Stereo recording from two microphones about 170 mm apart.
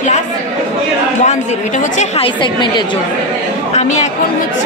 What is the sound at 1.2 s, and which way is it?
A woman's voice, 45° left (ahead or behind).